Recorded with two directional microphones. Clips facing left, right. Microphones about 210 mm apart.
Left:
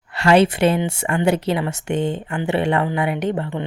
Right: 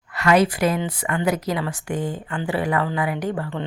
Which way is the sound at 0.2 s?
30° left (ahead or behind).